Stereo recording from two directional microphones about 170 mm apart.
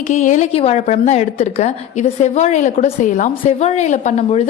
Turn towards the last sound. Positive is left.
turn(degrees=45)  # may be behind; listen again after turning